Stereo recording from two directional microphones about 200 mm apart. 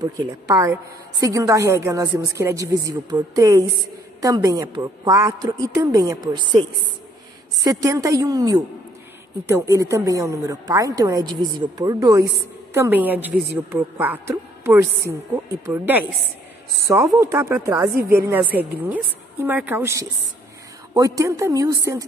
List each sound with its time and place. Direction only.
0.0 s a woman's voice: 20° right (ahead or behind)
7.6 s a woman's voice: 15° right (ahead or behind)